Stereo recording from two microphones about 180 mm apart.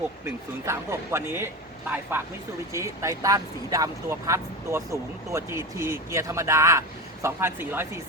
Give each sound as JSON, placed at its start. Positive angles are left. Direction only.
{"t": 0.3, "sound": "speech", "side_deg": -15}